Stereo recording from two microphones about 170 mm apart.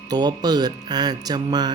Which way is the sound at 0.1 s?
25° right (ahead or behind).